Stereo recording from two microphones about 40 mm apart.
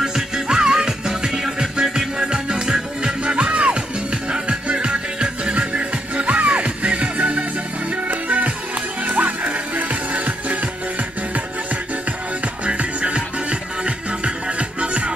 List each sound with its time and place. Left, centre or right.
0.0 s music: centre; by 10.6 s right
12.6 s music: right